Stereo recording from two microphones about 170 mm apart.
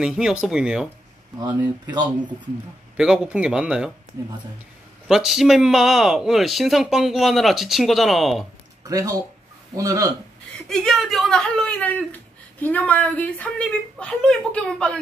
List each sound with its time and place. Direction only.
0.0 s a man's voice: 5° right (ahead or behind)
1.4 s speech: 25° right (ahead or behind)
3.0 s a man's voice: 5° right (ahead or behind)
5.0 s a man's voice: centre (ahead or behind)
8.8 s speech: 20° right (ahead or behind)
10.7 s speech: 5° left (ahead or behind)